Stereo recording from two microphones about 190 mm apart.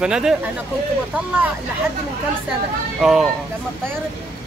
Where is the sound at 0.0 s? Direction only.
5° right (ahead or behind).